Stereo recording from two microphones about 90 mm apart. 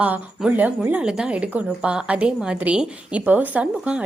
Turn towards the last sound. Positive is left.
turn(degrees=-15)  # may be behind; listen again after turning